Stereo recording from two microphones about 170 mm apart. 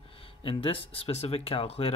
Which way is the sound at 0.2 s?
30° left (ahead or behind).